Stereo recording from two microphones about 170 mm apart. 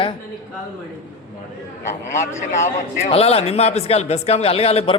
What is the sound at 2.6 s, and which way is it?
A man's voice, 40° left (ahead or behind).